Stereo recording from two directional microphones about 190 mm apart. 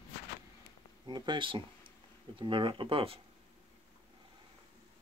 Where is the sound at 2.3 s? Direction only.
25° right (ahead or behind).